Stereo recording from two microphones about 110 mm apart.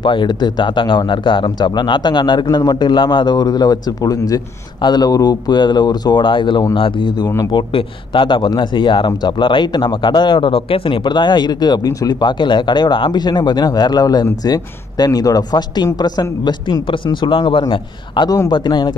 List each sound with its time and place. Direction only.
0.0 s a man's voice: 45° left (ahead or behind)